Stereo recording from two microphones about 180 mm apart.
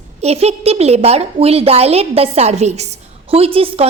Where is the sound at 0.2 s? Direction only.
35° right (ahead or behind).